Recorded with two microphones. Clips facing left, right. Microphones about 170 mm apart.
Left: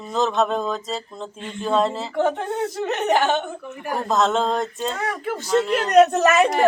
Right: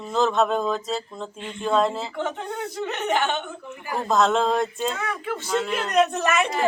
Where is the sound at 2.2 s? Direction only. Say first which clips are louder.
Left 7 dB; 45° left (ahead or behind).